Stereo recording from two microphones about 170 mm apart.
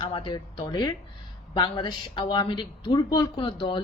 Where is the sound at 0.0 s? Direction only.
30° left (ahead or behind).